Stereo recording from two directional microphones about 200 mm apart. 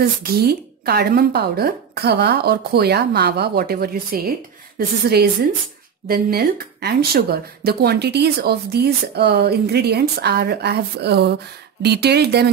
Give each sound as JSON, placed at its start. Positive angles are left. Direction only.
{"t": 0.0, "sound": "a woman's voice", "side_deg": -50}